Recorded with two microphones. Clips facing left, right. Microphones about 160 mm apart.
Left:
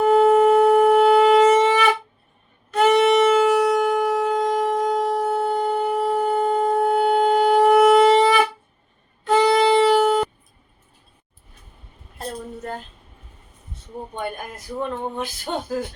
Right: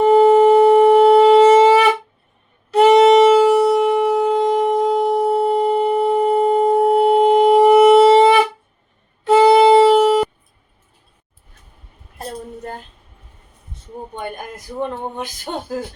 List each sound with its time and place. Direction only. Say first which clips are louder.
0.0 s wind instrument: right 4 dB; 25° right (ahead or behind)
2.7 s shofar: right 6 dB; 30° right (ahead or behind)
9.2 s wind instrument: right 6 dB; 25° right (ahead or behind)
14.2 s a sound: even; 20° right (ahead or behind)